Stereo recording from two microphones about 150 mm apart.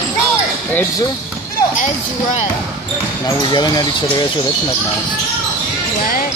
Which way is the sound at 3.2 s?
25° left (ahead or behind).